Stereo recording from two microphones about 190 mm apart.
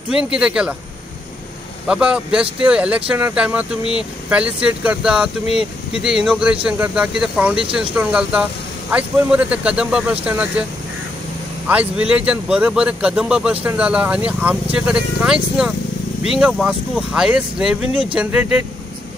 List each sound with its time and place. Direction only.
0.1 s speech: 5° right (ahead or behind)
1.9 s a man's voice: 5° right (ahead or behind)
11.6 s a man's voice: 10° right (ahead or behind)